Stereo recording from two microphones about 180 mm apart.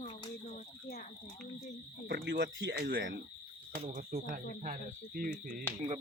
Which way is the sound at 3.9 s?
50° right (ahead or behind).